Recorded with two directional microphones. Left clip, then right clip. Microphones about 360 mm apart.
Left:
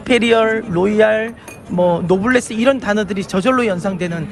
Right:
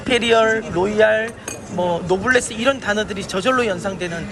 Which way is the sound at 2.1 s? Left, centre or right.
Centre.